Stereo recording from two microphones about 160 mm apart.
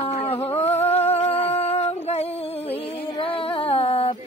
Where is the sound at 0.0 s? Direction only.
35° left (ahead or behind).